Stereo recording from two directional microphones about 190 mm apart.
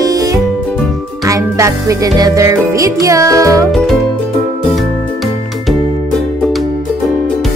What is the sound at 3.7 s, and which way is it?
Music, centre (ahead or behind).